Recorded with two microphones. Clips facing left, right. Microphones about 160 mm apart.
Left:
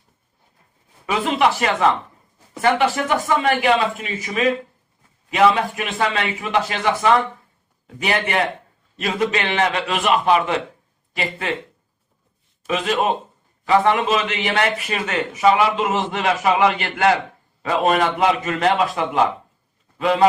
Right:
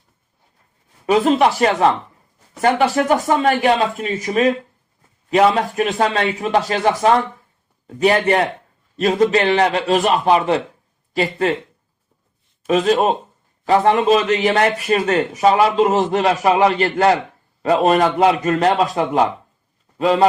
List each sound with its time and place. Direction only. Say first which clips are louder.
1.0 s speech: right 5 dB; 40° right (ahead or behind)
12.6 s speech: right 5 dB; 40° right (ahead or behind)